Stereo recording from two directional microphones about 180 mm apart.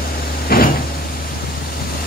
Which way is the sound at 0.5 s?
55° left (ahead or behind).